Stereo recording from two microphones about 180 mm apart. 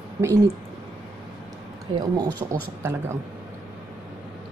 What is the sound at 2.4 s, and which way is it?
Speech, 20° right (ahead or behind).